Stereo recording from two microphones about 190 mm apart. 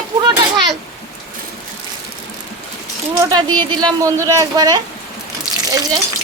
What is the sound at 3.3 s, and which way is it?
Speech, 20° right (ahead or behind).